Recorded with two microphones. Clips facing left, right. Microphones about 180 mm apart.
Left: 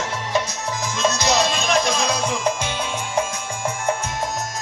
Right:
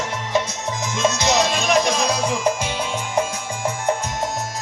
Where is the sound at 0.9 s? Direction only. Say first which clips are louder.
Right 1 dB; 25° right (ahead or behind).